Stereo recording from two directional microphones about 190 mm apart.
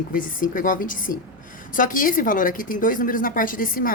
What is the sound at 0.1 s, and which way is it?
A woman's voice, 45° left (ahead or behind).